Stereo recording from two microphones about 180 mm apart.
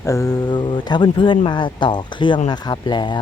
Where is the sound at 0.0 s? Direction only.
15° left (ahead or behind).